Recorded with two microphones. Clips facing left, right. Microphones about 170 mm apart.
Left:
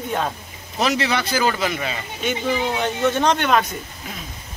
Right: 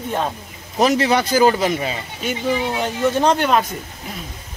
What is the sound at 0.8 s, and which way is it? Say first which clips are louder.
A man's voice: right 5 dB; 45° right (ahead or behind).